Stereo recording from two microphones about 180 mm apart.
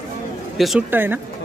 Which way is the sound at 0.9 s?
10° right (ahead or behind).